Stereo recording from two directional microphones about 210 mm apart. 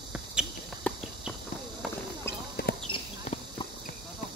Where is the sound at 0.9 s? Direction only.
5° left (ahead or behind).